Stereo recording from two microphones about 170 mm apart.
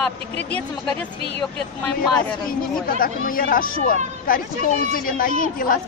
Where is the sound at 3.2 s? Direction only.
55° left (ahead or behind).